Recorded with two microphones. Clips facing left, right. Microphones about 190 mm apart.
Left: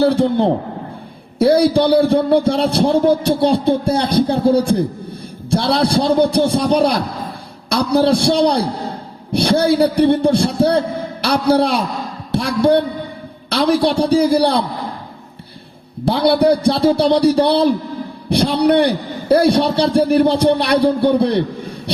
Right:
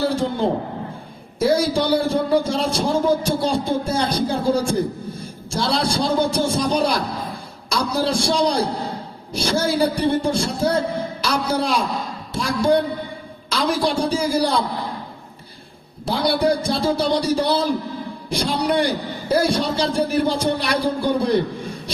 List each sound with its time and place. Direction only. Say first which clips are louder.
0.0 s a man's voice: left 7 dB; 65° left (ahead or behind)
16.0 s a man's voice: left 6 dB; 65° left (ahead or behind)